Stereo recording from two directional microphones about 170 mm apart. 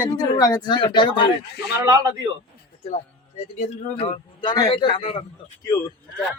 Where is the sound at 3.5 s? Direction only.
35° left (ahead or behind).